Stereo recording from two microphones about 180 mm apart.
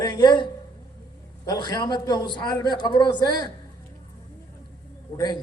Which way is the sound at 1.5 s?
20° left (ahead or behind).